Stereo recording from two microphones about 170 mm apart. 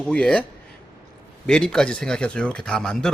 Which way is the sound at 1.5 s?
5° left (ahead or behind).